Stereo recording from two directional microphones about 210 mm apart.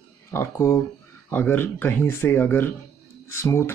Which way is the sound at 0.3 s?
15° left (ahead or behind).